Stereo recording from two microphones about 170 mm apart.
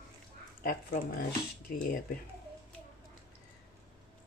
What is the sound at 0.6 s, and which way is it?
Speech, 60° left (ahead or behind).